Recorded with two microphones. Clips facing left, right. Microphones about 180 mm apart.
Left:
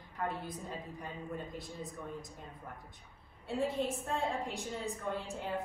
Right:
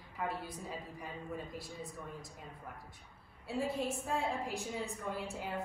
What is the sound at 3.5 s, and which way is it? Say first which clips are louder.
A woman's voice: left 2 dB; centre (ahead or behind).